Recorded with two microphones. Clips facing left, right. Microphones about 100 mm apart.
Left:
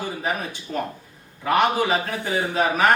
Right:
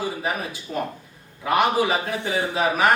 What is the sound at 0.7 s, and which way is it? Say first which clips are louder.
Speech: even; 10° right (ahead or behind).